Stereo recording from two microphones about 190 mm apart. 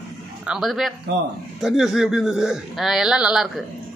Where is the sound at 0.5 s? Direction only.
Centre (ahead or behind).